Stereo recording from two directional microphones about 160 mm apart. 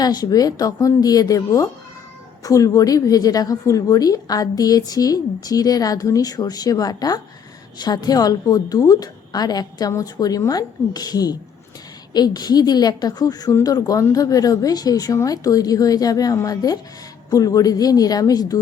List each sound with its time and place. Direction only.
0.0 s a woman's voice: 25° left (ahead or behind)